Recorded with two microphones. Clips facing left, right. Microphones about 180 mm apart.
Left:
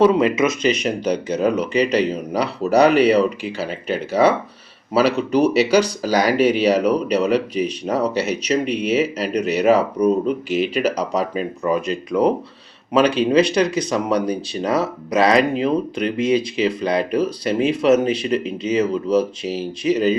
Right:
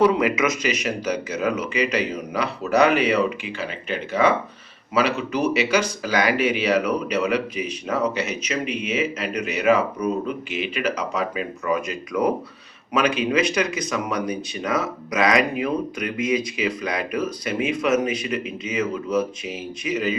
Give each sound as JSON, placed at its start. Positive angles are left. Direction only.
{"t": 0.0, "sound": "speech", "side_deg": 25}